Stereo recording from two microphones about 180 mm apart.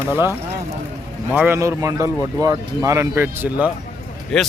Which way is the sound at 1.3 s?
10° right (ahead or behind).